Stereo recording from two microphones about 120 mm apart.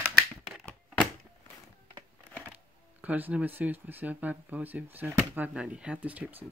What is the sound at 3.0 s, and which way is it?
Speech, 15° right (ahead or behind).